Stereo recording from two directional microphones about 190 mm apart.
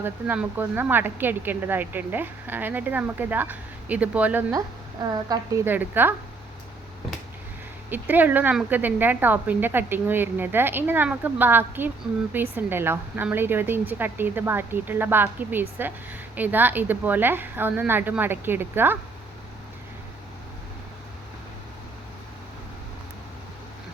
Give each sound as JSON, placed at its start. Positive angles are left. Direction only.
{"t": 0.0, "sound": "speech", "side_deg": -10}
{"t": 5.1, "sound": "a woman's voice", "side_deg": -20}
{"t": 5.7, "sound": "speech", "side_deg": -10}
{"t": 7.9, "sound": "speech", "side_deg": -10}